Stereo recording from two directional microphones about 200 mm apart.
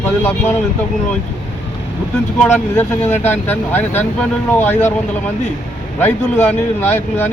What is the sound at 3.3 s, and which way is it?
Speech, 10° left (ahead or behind).